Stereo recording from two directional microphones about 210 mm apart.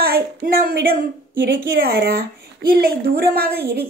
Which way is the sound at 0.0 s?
45° right (ahead or behind).